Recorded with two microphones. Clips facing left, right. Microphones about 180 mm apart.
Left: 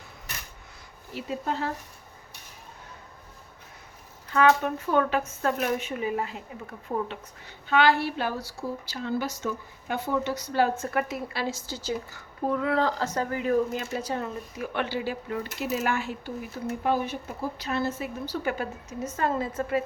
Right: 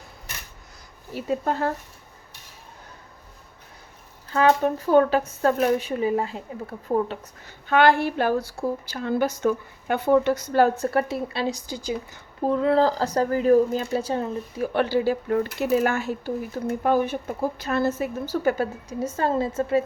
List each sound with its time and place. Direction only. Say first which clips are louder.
1.1 s a woman's voice: right 5 dB; 50° right (ahead or behind)
4.3 s speech: right 2 dB; 35° right (ahead or behind)
6.8 s a woman's voice: right 7 dB; 40° right (ahead or behind); by 12.2 s 15° right (ahead or behind)
12.4 s speech: right 6 dB; 30° right (ahead or behind)